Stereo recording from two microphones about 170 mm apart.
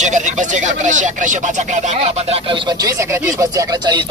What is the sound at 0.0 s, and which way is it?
Speech, 45° right (ahead or behind).